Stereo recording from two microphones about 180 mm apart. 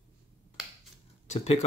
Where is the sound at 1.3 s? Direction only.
35° left (ahead or behind).